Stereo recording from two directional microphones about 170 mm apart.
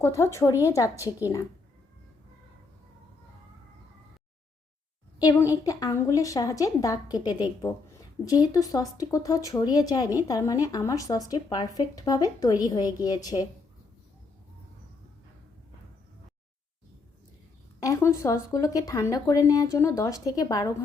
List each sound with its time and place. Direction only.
0.0 s speech: 15° left (ahead or behind)
5.2 s speech: 20° left (ahead or behind)
17.7 s speech: 15° left (ahead or behind)